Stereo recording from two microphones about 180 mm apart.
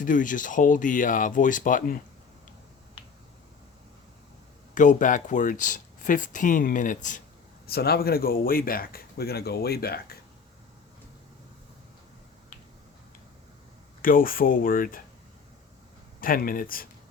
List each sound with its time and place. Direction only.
0.0 s speech: 45° left (ahead or behind)
4.7 s speech: 45° left (ahead or behind)
7.7 s speech: 60° left (ahead or behind)
14.0 s speech: 50° left (ahead or behind)
16.2 s speech: 50° left (ahead or behind)